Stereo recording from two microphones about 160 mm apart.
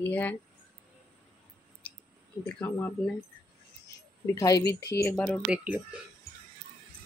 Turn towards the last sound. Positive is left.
turn(degrees=-10)  # may be behind; listen again after turning